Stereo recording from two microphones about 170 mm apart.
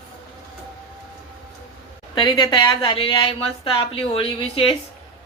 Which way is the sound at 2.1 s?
25° left (ahead or behind).